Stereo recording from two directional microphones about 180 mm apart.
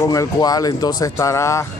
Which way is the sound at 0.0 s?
20° left (ahead or behind).